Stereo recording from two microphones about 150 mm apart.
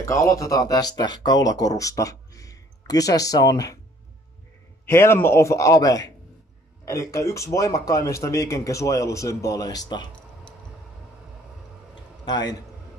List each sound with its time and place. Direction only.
0.0 s speech: 20° left (ahead or behind)
4.8 s speech: 15° left (ahead or behind)